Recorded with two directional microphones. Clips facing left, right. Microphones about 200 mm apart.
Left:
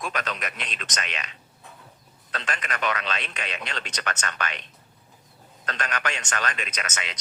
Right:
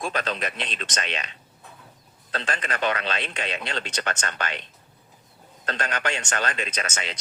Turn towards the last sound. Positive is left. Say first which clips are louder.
# right 3 dB
turn(degrees=-30)  # may be behind; listen again after turning